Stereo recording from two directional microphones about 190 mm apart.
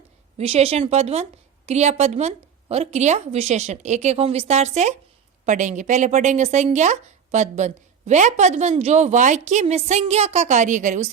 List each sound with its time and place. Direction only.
0.3 s speech: 30° right (ahead or behind)